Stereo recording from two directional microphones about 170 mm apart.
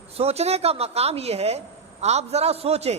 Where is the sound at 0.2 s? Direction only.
40° right (ahead or behind).